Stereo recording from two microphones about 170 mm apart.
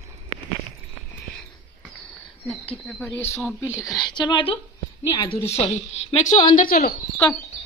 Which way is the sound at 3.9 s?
25° left (ahead or behind).